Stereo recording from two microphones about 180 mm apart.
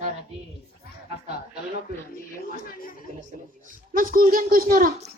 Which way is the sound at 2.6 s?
55° left (ahead or behind).